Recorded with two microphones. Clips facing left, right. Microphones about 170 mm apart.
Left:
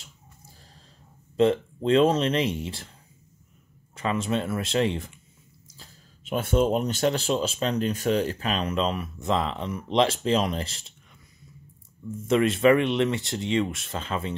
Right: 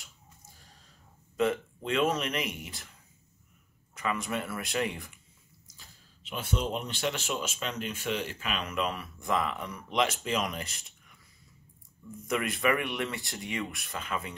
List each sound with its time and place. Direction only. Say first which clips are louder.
1.3 s speech: left 7 dB; 30° left (ahead or behind)
3.9 s speech: left 6 dB; 25° left (ahead or behind)
5.8 s speech: left 6 dB; 45° left (ahead or behind); by 10.9 s 30° left (ahead or behind)
12.2 s speech: left 9 dB; 25° left (ahead or behind)